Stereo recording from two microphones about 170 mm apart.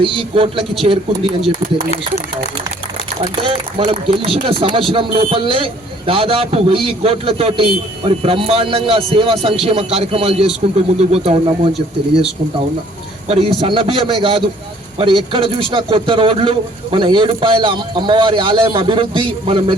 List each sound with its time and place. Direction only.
0.0 s speech: 30° right (ahead or behind)
3.2 s speech: 35° right (ahead or behind)
13.2 s a man's voice: 35° right (ahead or behind)